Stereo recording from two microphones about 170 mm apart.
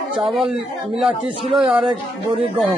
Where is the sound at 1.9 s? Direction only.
35° right (ahead or behind).